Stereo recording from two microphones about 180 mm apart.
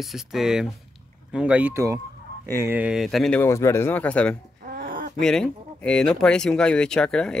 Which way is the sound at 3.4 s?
15° left (ahead or behind).